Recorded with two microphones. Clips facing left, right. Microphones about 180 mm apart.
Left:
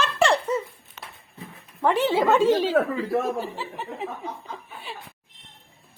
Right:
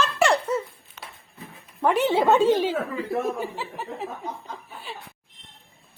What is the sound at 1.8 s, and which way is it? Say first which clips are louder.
Speech: even; 10° right (ahead or behind).